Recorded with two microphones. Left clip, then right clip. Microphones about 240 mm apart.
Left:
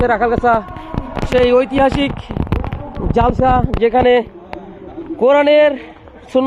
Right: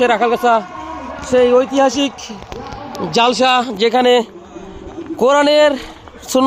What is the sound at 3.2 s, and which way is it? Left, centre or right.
A man's voice, right.